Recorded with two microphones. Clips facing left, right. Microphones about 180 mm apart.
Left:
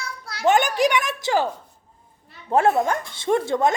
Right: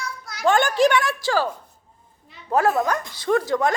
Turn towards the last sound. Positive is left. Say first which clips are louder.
# even
turn(degrees=25)  # may be behind; listen again after turning